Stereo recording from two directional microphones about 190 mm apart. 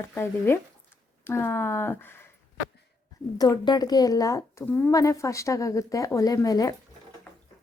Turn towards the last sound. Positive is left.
turn(degrees=20)  # may be behind; listen again after turning